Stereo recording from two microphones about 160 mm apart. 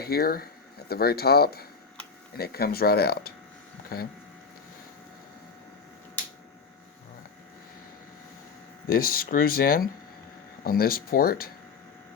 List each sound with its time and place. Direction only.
0.0 s speech: 75° left (ahead or behind)
8.9 s speech: 65° left (ahead or behind)